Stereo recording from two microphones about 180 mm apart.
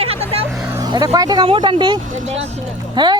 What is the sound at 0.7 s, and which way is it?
Speech, 20° right (ahead or behind).